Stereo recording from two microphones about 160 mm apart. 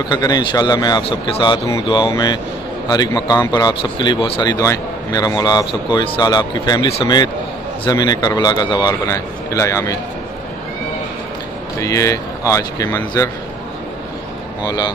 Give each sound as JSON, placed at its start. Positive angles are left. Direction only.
{"t": 0.1, "sound": "a man's voice", "side_deg": 25}
{"t": 11.8, "sound": "a man's voice", "side_deg": 20}
{"t": 14.6, "sound": "a man's voice", "side_deg": 25}